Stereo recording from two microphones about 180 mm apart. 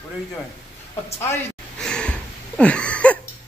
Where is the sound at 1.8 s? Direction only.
5° left (ahead or behind).